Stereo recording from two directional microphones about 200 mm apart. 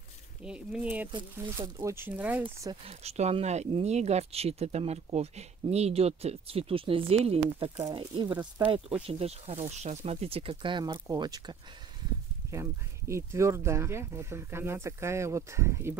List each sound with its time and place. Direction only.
0.4 s speech: 5° right (ahead or behind)
1.1 s speech: 20° right (ahead or behind)
2.4 s speech: 20° right (ahead or behind)
2.9 s speech: 30° right (ahead or behind)
8.4 s speech: 10° right (ahead or behind)
9.0 s speech: 30° right (ahead or behind)
13.1 s speech: 15° right (ahead or behind)